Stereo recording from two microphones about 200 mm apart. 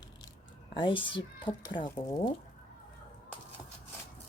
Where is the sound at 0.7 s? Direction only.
25° left (ahead or behind).